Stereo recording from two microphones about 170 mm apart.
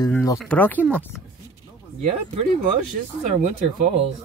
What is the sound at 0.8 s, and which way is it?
Speech, 5° right (ahead or behind).